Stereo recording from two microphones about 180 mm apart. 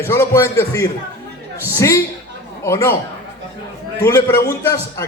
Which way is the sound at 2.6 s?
15° left (ahead or behind).